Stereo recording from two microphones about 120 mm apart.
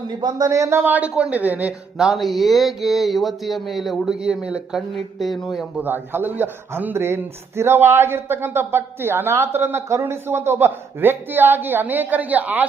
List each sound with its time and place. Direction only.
0.2 s a man's voice: 35° right (ahead or behind); by 5.8 s 5° right (ahead or behind)
5.8 s a man's voice: 15° right (ahead or behind)